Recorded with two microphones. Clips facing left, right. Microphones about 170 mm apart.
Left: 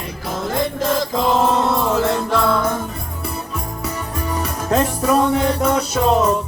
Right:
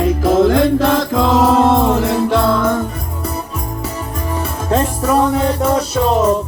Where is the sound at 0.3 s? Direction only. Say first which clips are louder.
Right 10 dB; 80° right.